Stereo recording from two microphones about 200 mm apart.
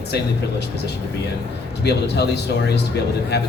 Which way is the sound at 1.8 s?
55° left (ahead or behind).